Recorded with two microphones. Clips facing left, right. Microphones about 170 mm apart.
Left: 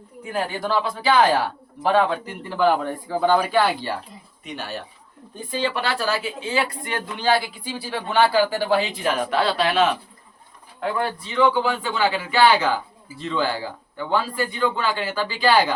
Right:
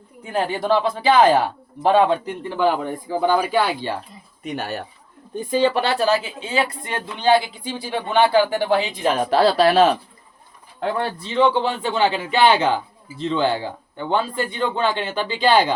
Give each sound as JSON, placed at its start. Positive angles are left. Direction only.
{"t": 0.3, "sound": "speech", "side_deg": -25}
{"t": 4.5, "sound": "speech", "side_deg": -45}
{"t": 5.8, "sound": "speech", "side_deg": -20}
{"t": 9.1, "sound": "speech", "side_deg": -35}